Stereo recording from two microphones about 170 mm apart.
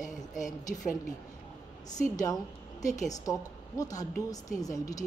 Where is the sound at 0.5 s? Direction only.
20° left (ahead or behind).